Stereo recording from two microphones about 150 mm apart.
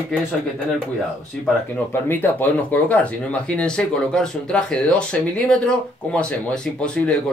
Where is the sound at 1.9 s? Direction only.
15° left (ahead or behind).